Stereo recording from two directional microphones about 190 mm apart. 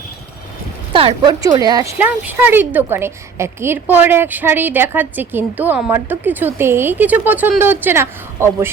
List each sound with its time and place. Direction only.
0.9 s speech: 25° right (ahead or behind)
2.0 s a woman's voice: 10° right (ahead or behind)